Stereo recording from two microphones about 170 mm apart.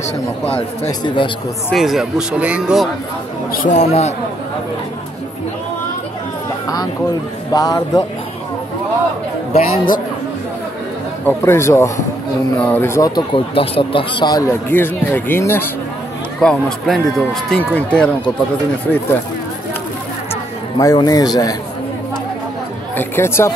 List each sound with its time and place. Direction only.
0.8 s a man's voice: 30° left (ahead or behind)
1.7 s speech: centre (ahead or behind)
3.5 s a man's voice: 45° left (ahead or behind)
7.5 s a man's voice: 20° left (ahead or behind)
9.5 s a man's voice: 45° left (ahead or behind)
11.2 s speech: 15° left (ahead or behind)
16.3 s speech: 5° left (ahead or behind)
20.7 s a man's voice: 20° left (ahead or behind)
22.9 s speech: 15° left (ahead or behind)